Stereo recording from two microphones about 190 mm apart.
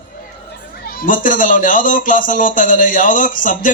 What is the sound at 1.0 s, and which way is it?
A man's voice, 45° left (ahead or behind).